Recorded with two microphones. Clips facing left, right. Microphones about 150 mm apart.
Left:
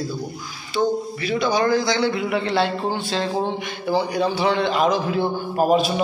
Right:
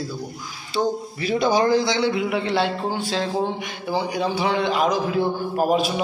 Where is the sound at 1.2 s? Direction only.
40° right (ahead or behind).